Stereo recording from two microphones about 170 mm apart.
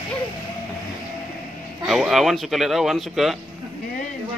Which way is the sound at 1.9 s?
Centre (ahead or behind).